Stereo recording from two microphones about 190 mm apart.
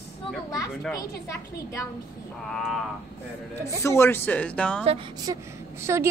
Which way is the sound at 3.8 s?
15° left (ahead or behind).